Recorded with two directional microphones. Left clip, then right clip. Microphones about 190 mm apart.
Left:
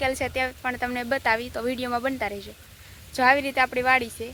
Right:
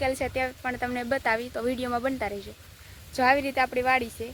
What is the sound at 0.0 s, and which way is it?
Speech, 5° right (ahead or behind).